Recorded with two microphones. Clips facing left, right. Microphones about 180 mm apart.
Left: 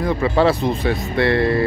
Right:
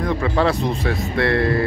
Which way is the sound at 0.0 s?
5° left (ahead or behind).